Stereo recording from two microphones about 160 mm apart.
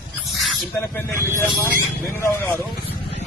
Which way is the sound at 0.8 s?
15° left (ahead or behind).